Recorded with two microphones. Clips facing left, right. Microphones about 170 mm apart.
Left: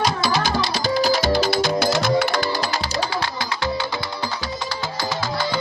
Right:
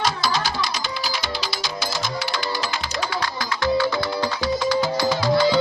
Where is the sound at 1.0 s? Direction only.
45° left (ahead or behind); by 2.4 s 60° left (ahead or behind).